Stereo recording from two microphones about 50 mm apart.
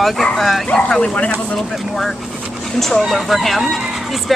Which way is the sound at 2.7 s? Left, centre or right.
Centre.